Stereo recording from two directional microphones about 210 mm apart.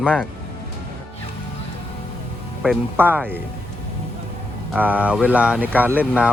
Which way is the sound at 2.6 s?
5° right (ahead or behind).